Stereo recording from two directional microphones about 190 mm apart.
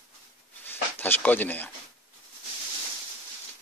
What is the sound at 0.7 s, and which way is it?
Speech, 10° left (ahead or behind).